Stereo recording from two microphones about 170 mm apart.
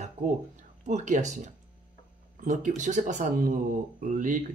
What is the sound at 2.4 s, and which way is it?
Speech, 45° right (ahead or behind).